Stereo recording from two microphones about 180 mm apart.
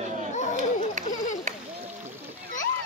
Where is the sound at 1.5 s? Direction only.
40° right (ahead or behind).